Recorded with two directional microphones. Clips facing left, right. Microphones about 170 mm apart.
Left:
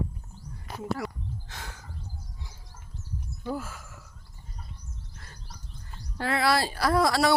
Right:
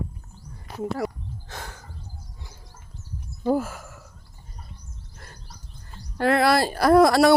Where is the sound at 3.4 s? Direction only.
50° right (ahead or behind).